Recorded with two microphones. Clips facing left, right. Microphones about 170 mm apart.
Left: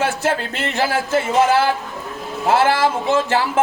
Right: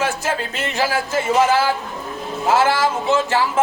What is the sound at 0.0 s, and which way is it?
A man's voice, 60° left (ahead or behind).